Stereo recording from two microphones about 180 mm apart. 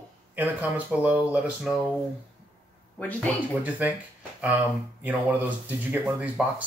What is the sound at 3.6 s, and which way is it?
Speech, 10° right (ahead or behind).